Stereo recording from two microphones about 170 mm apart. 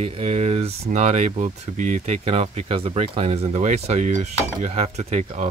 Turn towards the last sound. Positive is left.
turn(degrees=-45)  # may be behind; listen again after turning